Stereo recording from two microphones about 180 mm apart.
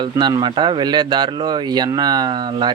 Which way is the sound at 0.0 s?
25° right (ahead or behind).